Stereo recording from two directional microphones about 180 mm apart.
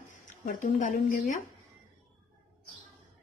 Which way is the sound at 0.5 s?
45° left (ahead or behind).